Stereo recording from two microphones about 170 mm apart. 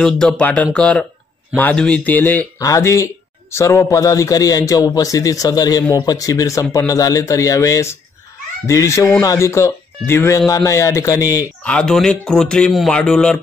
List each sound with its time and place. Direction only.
0.0 s a man's voice: 5° left (ahead or behind)
11.6 s a man's voice: 5° left (ahead or behind)